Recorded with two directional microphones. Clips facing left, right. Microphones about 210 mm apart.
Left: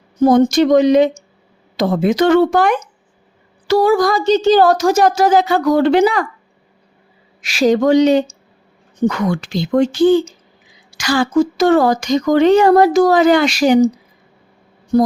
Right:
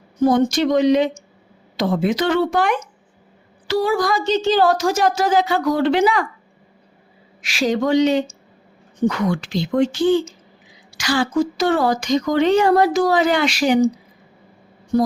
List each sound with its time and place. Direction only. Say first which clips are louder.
0.3 s speech: left 6 dB; 45° left (ahead or behind)
7.4 s speech: left 6 dB; 40° left (ahead or behind)